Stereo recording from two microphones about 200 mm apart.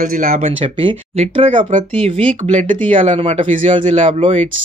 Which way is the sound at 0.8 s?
30° right (ahead or behind).